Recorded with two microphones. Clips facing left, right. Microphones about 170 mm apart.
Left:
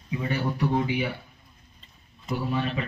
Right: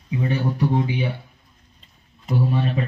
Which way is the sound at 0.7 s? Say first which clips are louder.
Right 3 dB; 25° right (ahead or behind).